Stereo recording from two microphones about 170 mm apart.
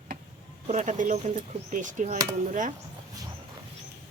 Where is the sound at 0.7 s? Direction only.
45° right (ahead or behind).